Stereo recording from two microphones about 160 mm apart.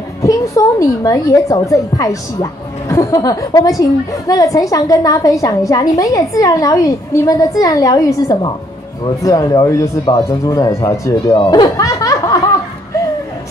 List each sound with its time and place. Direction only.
0.2 s a woman's voice: 20° left (ahead or behind)